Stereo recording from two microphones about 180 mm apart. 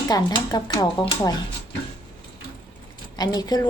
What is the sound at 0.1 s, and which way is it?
A woman's voice, 20° left (ahead or behind).